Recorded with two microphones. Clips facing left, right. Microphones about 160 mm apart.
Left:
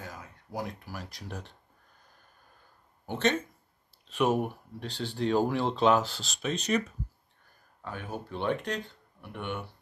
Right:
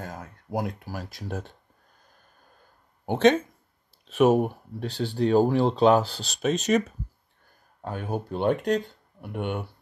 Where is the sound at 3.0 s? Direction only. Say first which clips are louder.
Right 9 dB; 55° right (ahead or behind).